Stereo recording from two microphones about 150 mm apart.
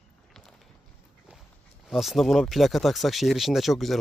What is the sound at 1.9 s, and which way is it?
Speech, centre (ahead or behind).